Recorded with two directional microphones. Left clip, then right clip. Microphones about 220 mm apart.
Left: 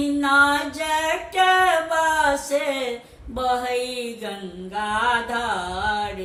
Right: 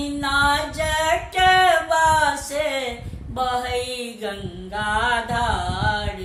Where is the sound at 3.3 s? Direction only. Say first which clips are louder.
Even; 15° right (ahead or behind).